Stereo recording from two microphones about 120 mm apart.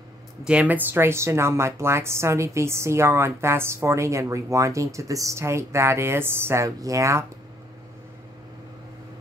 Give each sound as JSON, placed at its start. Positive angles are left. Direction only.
{"t": 0.5, "sound": "speech", "side_deg": -10}